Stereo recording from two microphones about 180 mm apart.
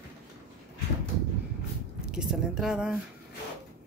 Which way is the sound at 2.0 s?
5° right (ahead or behind).